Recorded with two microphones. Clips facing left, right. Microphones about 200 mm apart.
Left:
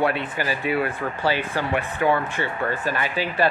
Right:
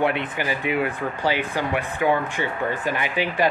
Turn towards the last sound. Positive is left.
turn(degrees=-15)  # may be behind; listen again after turning